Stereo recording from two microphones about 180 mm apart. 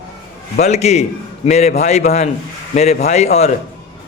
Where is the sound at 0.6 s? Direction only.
35° left (ahead or behind).